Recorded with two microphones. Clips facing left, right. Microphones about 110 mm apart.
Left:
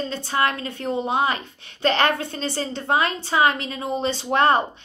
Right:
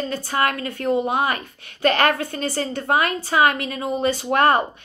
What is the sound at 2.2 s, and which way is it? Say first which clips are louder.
Speech: right 2 dB; 25° left (ahead or behind).